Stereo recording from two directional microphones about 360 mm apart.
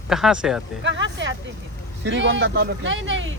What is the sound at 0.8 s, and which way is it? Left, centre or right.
Speech, right.